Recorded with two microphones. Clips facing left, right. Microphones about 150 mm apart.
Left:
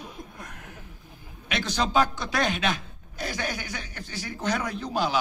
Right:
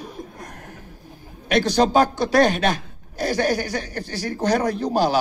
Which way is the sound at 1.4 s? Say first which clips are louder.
Right 10 dB; 40° right (ahead or behind).